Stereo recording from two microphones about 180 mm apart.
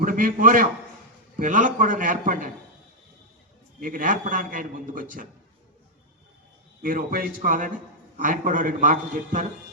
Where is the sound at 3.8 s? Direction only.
50° right (ahead or behind).